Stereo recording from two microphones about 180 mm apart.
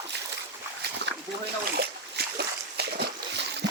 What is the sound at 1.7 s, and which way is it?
Splash, 60° right (ahead or behind).